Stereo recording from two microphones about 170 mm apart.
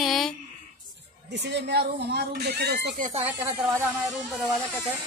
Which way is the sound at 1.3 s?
90° right.